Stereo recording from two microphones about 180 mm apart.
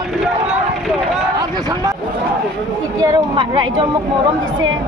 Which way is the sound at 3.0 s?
20° right (ahead or behind).